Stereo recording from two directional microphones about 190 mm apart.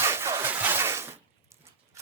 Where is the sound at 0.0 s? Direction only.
15° right (ahead or behind).